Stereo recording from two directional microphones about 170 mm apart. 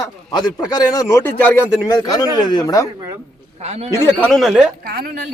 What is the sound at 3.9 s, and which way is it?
Speech, 5° left (ahead or behind).